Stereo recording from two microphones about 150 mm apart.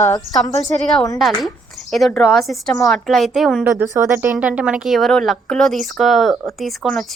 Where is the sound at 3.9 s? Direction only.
20° right (ahead or behind).